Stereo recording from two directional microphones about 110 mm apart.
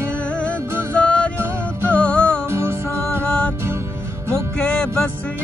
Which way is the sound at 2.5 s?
25° right (ahead or behind).